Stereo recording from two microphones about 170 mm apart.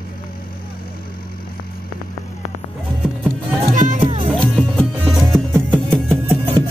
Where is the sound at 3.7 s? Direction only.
50° right (ahead or behind).